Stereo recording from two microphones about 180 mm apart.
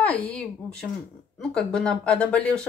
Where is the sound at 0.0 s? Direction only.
5° left (ahead or behind).